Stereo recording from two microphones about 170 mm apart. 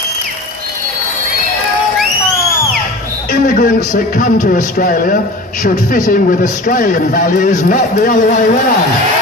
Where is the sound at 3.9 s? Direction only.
55° left (ahead or behind).